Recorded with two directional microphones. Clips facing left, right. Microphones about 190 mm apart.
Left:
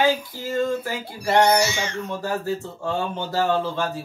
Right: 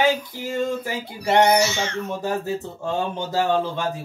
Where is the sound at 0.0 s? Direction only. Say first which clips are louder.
Even; 15° right (ahead or behind).